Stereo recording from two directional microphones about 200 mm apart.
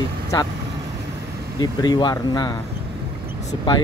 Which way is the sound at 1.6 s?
20° left (ahead or behind).